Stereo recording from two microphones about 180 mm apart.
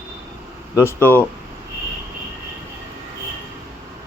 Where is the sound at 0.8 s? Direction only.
15° left (ahead or behind).